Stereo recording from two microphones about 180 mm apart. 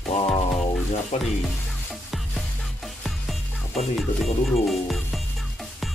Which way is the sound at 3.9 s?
Centre (ahead or behind).